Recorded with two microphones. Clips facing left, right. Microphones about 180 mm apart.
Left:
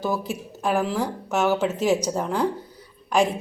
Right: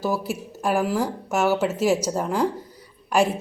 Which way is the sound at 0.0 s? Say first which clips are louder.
Right 1 dB; 10° right (ahead or behind).